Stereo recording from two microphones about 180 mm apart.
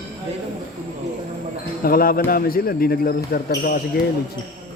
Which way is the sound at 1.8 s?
55° left (ahead or behind).